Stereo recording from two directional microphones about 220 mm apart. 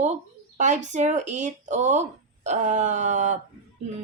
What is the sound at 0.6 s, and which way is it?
Speech, 35° right (ahead or behind).